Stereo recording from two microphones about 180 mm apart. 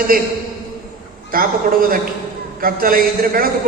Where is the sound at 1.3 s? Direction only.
55° right (ahead or behind).